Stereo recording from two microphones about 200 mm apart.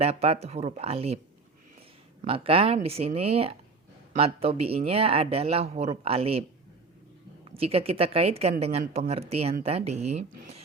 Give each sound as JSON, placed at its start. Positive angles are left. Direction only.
{"t": 0.0, "sound": "speech", "side_deg": -30}
{"t": 2.2, "sound": "speech", "side_deg": -25}
{"t": 7.5, "sound": "speech", "side_deg": -30}